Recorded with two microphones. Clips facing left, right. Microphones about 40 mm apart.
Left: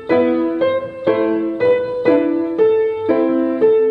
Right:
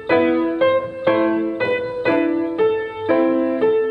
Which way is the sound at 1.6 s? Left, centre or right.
Right.